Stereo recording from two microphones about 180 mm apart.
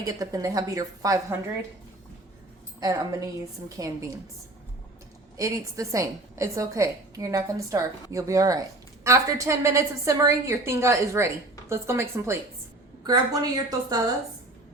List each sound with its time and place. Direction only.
0.0 s a woman's voice: 20° right (ahead or behind)
2.8 s a woman's voice: 20° right (ahead or behind)
5.4 s a woman's voice: 15° right (ahead or behind)